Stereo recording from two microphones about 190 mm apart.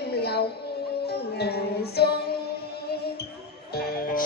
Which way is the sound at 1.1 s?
60° left (ahead or behind).